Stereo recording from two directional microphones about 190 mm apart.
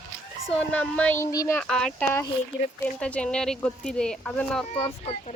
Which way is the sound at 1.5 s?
5° left (ahead or behind).